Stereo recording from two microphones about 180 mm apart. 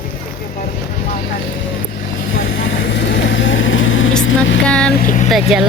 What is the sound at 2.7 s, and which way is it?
Vehicle, 70° left (ahead or behind).